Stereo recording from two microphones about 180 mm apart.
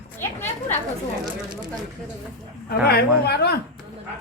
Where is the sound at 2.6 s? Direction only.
60° left (ahead or behind).